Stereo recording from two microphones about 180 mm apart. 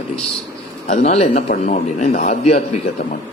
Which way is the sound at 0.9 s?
40° left (ahead or behind).